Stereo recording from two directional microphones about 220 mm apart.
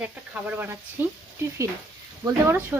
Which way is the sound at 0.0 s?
10° right (ahead or behind).